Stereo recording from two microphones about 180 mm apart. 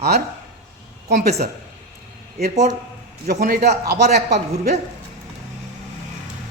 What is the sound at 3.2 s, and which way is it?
Speech, 60° right (ahead or behind).